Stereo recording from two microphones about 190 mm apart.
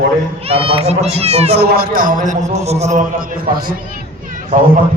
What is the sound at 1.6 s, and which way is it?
A man's voice, 55° right (ahead or behind).